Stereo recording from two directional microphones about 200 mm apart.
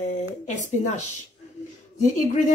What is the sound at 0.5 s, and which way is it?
Speech, 35° left (ahead or behind).